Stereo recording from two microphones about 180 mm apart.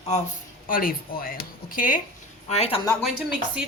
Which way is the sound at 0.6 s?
50° left (ahead or behind).